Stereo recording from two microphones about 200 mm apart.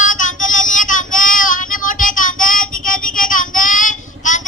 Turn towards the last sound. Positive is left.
turn(degrees=40)  # may be behind; listen again after turning